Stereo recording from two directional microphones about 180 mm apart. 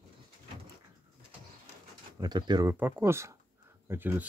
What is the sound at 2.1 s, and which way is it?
Speech, 25° right (ahead or behind).